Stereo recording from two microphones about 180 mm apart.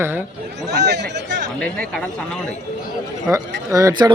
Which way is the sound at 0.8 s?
75° right (ahead or behind).